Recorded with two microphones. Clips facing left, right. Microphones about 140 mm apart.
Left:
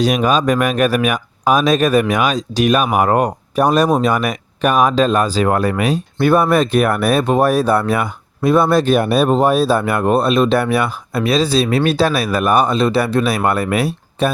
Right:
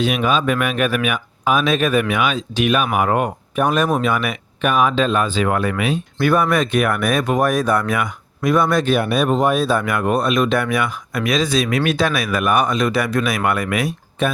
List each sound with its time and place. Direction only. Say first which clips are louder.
0.0 s speech: left 3 dB; 40° left (ahead or behind)